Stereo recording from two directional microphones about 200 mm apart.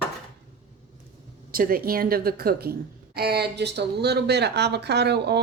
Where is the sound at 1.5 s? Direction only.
45° right (ahead or behind).